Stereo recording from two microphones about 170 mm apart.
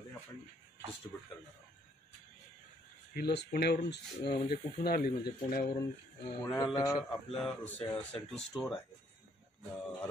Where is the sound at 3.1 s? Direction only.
70° left (ahead or behind).